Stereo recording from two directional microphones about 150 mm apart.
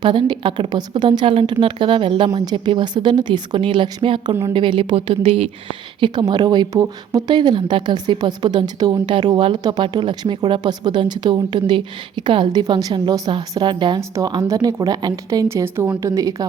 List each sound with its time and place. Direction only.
0.0 s a woman's voice: 30° right (ahead or behind)